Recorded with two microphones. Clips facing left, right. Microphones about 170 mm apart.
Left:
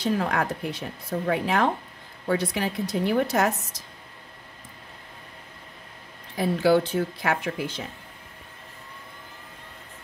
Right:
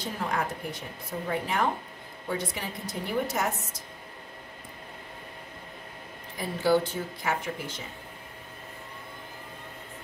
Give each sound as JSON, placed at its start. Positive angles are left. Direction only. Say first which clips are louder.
{"t": 0.0, "sound": "speech", "louder": "left 6 dB", "side_deg": 70}
{"t": 6.3, "sound": "speech", "louder": "left 4 dB", "side_deg": 70}